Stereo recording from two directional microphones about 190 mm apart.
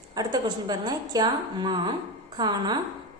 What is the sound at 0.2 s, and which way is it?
A woman's voice, 20° right (ahead or behind).